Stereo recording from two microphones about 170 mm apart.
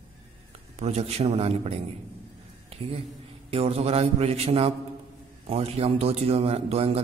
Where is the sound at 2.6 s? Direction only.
35° right (ahead or behind).